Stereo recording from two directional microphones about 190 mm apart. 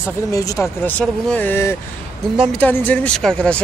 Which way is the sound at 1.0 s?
5° left (ahead or behind).